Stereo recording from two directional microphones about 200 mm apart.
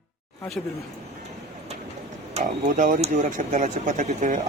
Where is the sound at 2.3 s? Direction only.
35° right (ahead or behind).